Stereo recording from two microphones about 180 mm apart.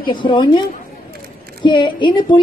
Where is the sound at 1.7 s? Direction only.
25° left (ahead or behind).